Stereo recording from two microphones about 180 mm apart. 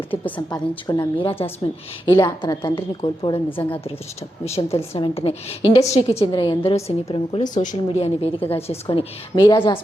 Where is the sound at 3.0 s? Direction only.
40° left (ahead or behind).